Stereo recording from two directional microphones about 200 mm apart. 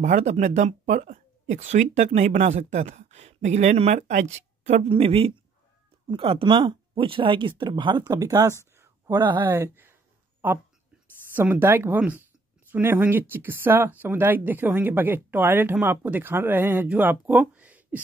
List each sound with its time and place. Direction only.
0.0 s speech: 35° right (ahead or behind); by 8.5 s 15° right (ahead or behind)
8.7 s a sound: 15° right (ahead or behind)
9.5 s speech: 10° right (ahead or behind)
11.3 s speech: 10° right (ahead or behind)